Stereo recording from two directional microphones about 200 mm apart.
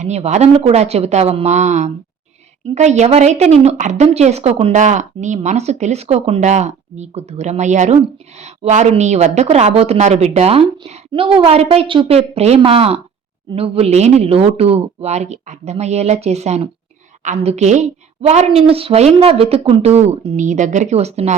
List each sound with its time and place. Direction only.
0.0 s a woman's voice: 35° right (ahead or behind)